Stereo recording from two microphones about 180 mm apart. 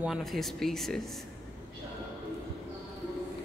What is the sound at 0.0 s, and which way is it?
Speech, centre (ahead or behind).